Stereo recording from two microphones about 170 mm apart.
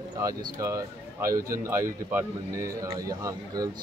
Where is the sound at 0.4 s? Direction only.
20° right (ahead or behind).